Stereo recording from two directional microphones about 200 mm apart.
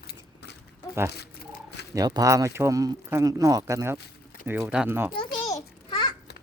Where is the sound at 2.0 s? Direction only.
20° right (ahead or behind).